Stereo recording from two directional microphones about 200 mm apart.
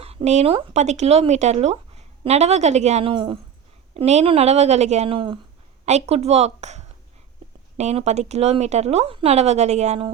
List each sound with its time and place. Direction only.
0.0 s speech: 30° right (ahead or behind)